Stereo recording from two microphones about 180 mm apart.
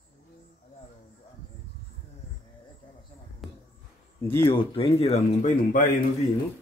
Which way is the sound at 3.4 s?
Centre (ahead or behind).